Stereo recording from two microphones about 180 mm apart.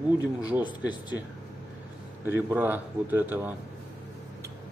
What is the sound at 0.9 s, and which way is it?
Speech, 25° left (ahead or behind).